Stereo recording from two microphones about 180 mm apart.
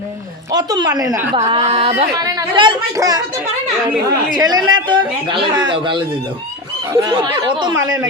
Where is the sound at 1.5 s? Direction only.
30° right (ahead or behind).